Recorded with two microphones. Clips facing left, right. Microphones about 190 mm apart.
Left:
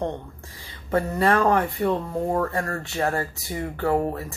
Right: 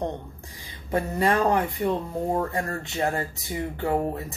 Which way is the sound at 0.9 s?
15° right (ahead or behind).